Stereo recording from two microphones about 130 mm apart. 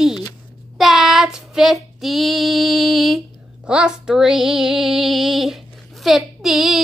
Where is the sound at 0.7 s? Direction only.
Centre (ahead or behind).